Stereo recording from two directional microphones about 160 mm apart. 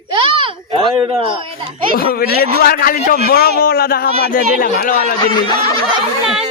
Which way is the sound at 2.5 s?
65° left (ahead or behind).